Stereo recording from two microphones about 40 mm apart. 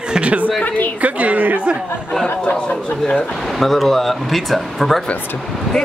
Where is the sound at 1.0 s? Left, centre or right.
Right.